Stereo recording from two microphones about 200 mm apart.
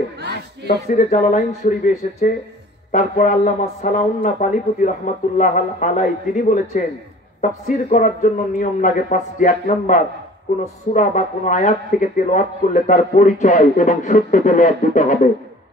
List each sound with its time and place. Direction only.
0.8 s speech: 40° left (ahead or behind)